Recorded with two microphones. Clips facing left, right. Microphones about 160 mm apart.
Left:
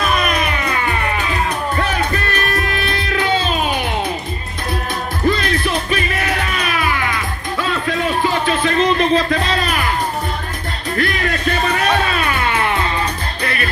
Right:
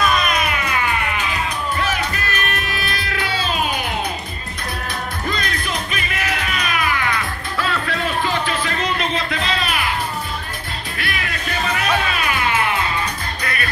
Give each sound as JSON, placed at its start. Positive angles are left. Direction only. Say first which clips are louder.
{"t": 0.0, "sound": "music", "louder": "left 1 dB", "side_deg": 30}
{"t": 2.3, "sound": "music", "louder": "left 5 dB", "side_deg": 30}
{"t": 5.3, "sound": "music", "louder": "left 6 dB", "side_deg": 30}
{"t": 8.9, "sound": "music", "louder": "left 8 dB", "side_deg": 35}
{"t": 11.0, "sound": "music", "louder": "left 9 dB", "side_deg": 40}
{"t": 13.4, "sound": "music", "louder": "left 5 dB", "side_deg": 30}